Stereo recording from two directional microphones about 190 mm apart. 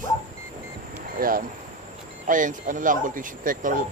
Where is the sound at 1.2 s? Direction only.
50° right (ahead or behind).